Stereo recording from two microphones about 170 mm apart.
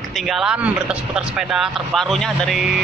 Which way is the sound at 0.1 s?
Centre (ahead or behind).